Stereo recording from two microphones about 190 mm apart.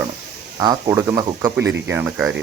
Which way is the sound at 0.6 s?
20° right (ahead or behind).